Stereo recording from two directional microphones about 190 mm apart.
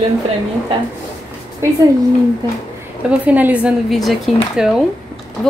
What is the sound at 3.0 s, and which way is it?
A woman's voice, 5° right (ahead or behind).